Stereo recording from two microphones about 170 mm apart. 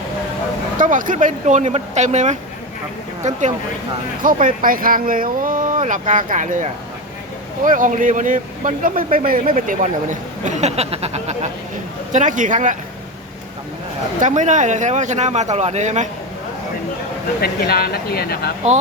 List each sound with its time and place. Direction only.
0.8 s speech: 50° right (ahead or behind)
14.2 s speech: 45° right (ahead or behind)
17.4 s speech: 65° left (ahead or behind)